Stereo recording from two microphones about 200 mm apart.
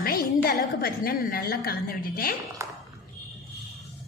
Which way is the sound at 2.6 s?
15° right (ahead or behind).